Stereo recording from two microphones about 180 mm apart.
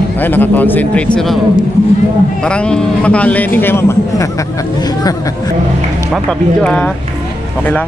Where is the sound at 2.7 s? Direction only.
5° left (ahead or behind).